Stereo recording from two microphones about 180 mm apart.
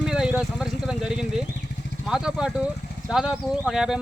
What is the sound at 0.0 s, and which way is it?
Speech, 5° right (ahead or behind).